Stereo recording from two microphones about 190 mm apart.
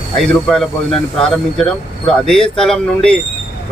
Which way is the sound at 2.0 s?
5° left (ahead or behind).